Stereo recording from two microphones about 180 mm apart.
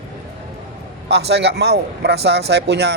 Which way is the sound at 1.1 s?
65° right (ahead or behind).